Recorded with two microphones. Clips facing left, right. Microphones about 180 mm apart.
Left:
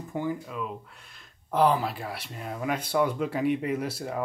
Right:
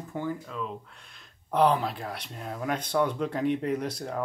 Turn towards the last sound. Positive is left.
turn(degrees=5)  # may be behind; listen again after turning